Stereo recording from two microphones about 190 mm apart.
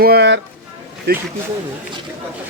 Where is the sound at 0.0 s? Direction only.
60° right (ahead or behind).